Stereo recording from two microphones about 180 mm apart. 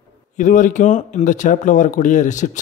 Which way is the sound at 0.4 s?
45° left (ahead or behind).